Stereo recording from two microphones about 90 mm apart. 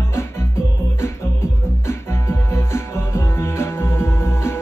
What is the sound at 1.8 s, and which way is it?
Music, 30° left (ahead or behind).